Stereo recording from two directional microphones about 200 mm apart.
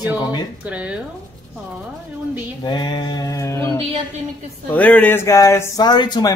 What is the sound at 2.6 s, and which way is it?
A man's voice, 25° left (ahead or behind).